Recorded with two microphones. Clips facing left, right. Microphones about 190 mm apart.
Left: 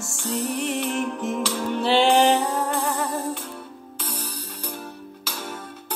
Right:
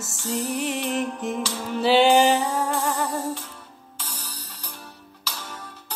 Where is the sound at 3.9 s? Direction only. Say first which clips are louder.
Left 6 dB; 55° left (ahead or behind).